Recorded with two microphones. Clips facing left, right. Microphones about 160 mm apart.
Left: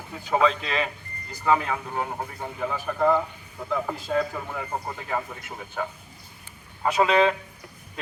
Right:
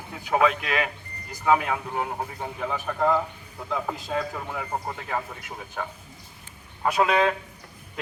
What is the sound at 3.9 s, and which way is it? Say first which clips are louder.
Speech: left 1 dB; 15° right (ahead or behind).